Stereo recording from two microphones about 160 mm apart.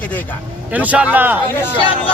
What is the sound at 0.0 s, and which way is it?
Speech, 10° left (ahead or behind).